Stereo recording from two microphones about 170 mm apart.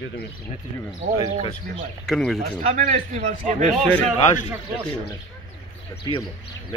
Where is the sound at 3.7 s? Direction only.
Centre (ahead or behind).